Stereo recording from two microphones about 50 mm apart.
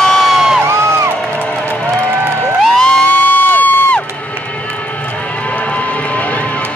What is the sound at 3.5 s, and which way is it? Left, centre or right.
Crowd, left.